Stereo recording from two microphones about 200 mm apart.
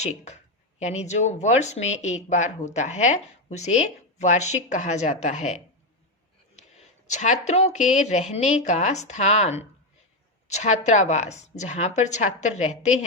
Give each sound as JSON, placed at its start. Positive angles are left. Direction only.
{"t": 0.0, "sound": "speech", "side_deg": 35}
{"t": 6.7, "sound": "a sound", "side_deg": 35}
{"t": 7.4, "sound": "speech", "side_deg": 35}